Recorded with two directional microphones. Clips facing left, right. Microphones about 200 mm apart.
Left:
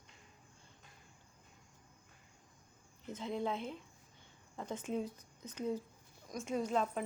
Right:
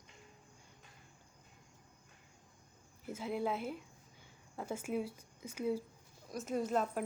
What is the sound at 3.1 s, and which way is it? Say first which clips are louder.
A woman's voice: right 1 dB; 10° right (ahead or behind).